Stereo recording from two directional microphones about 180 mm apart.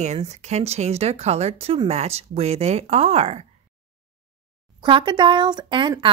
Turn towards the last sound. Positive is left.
turn(degrees=-25)  # may be behind; listen again after turning